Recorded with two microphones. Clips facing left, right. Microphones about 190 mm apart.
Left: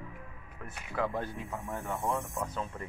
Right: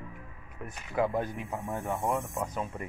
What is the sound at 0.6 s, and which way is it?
Speech, 15° right (ahead or behind).